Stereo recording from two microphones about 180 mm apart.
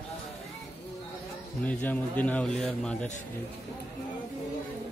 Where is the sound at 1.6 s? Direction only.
10° left (ahead or behind).